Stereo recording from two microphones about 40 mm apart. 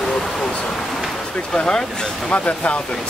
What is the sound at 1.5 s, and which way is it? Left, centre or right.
Speech, centre.